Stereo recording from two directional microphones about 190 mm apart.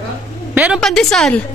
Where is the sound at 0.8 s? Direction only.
5° left (ahead or behind).